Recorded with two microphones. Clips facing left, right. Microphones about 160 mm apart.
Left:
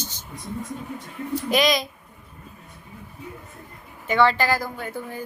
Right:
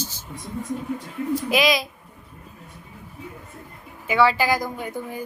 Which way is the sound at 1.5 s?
5° right (ahead or behind).